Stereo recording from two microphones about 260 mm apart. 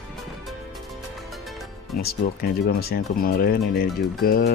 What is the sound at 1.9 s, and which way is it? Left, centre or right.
Speech, left.